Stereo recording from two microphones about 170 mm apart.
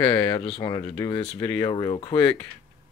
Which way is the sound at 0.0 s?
25° left (ahead or behind).